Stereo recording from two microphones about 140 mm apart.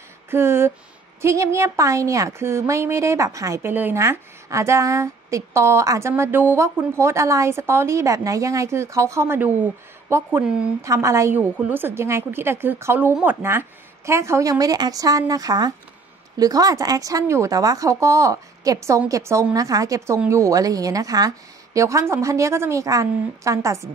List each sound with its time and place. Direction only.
0.3 s a woman's voice: 15° right (ahead or behind)